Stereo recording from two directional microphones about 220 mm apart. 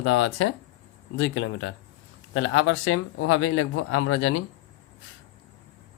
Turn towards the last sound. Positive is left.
turn(degrees=70)  # may be behind; listen again after turning